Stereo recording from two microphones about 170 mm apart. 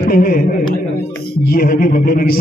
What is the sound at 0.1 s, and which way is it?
A man's voice, 60° left (ahead or behind).